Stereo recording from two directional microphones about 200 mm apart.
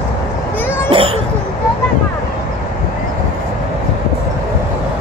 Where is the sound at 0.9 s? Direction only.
25° right (ahead or behind).